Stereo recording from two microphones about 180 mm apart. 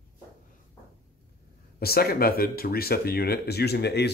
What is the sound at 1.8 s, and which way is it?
Speech, 60° left (ahead or behind).